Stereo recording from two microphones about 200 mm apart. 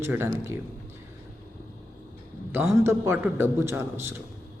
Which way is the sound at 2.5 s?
10° right (ahead or behind).